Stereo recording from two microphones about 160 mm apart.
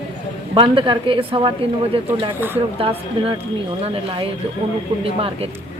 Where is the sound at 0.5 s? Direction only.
30° right (ahead or behind).